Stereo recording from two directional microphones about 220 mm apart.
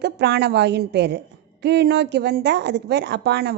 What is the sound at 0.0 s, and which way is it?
A woman's voice, 50° right (ahead or behind).